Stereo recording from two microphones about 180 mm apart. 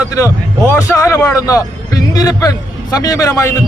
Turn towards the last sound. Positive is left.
turn(degrees=15)  # may be behind; listen again after turning